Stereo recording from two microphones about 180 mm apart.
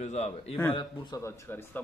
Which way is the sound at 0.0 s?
40° left (ahead or behind).